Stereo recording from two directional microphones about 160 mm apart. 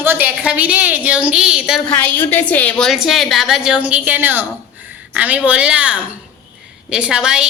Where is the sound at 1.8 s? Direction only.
10° left (ahead or behind).